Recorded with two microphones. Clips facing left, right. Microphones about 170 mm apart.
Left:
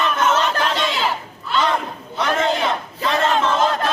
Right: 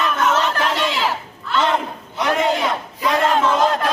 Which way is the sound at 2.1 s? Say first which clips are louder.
Right 1 dB; 20° right (ahead or behind).